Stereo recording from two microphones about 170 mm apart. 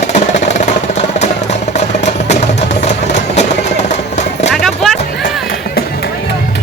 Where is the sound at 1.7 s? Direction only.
40° left (ahead or behind).